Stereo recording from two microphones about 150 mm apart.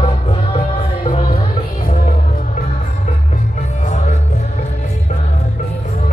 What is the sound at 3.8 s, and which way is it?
Music, 50° left (ahead or behind).